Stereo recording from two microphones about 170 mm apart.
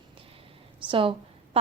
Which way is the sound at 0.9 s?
30° right (ahead or behind).